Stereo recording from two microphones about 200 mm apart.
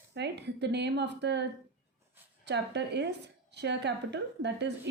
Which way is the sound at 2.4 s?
60° right (ahead or behind).